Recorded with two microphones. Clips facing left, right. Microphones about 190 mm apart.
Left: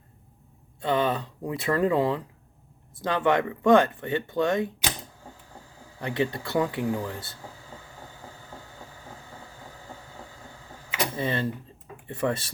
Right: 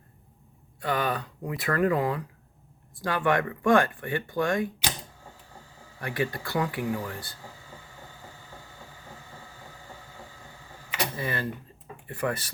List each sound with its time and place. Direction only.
0.8 s speech: 25° left (ahead or behind)
6.0 s speech: 20° left (ahead or behind)
11.2 s speech: 25° left (ahead or behind)